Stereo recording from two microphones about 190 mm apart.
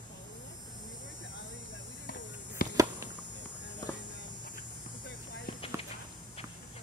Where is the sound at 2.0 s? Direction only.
60° left (ahead or behind).